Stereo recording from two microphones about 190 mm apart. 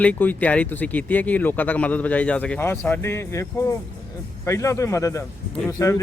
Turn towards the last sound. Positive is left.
turn(degrees=15)  # may be behind; listen again after turning